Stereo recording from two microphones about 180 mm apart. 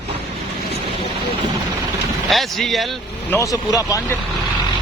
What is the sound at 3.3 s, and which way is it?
Speech, 15° left (ahead or behind).